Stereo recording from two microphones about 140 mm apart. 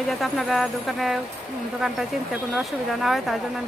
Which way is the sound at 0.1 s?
Centre (ahead or behind).